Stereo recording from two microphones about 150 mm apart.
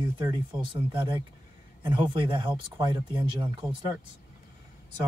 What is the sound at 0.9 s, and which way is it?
Speech, 30° right (ahead or behind).